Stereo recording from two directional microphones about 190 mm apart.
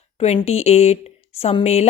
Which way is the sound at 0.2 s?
35° left (ahead or behind).